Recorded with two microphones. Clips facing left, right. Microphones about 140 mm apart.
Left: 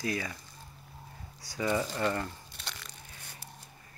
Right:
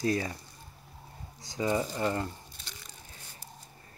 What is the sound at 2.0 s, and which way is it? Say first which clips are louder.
Speech: right 1 dB; 25° right (ahead or behind).